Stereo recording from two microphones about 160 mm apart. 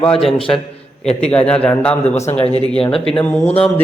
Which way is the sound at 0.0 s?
5° left (ahead or behind).